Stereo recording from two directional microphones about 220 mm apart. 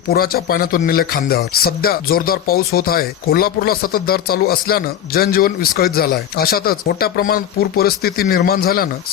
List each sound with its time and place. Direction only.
0.1 s speech: 45° left (ahead or behind)